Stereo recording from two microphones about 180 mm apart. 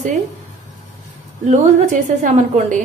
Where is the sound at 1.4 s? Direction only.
40° right (ahead or behind).